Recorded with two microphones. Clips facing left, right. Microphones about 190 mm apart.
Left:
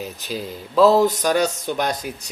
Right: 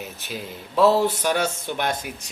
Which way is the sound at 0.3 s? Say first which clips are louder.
Left 5 dB; 35° left (ahead or behind).